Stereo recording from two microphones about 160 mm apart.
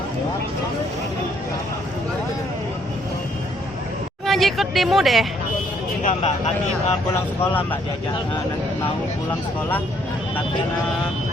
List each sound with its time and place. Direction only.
4.3 s speech: centre (ahead or behind)
6.0 s speech: 50° left (ahead or behind)
7.4 s speech: 10° left (ahead or behind)